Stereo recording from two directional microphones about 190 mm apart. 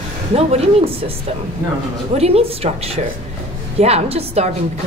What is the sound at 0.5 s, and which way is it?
Speech, 30° right (ahead or behind).